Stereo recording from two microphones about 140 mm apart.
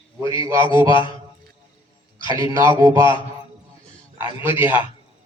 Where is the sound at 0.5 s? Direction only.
35° left (ahead or behind).